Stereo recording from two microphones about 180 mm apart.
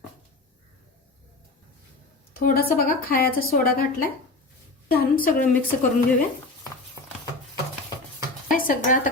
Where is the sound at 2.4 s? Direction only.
55° left (ahead or behind).